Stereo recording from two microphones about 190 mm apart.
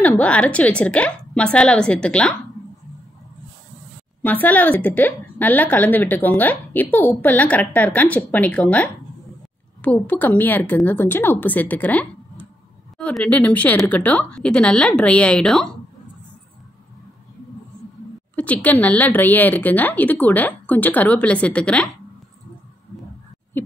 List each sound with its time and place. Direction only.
0.0 s speech: 5° left (ahead or behind)
4.2 s a woman's voice: 10° left (ahead or behind)
18.3 s a woman's voice: 10° left (ahead or behind)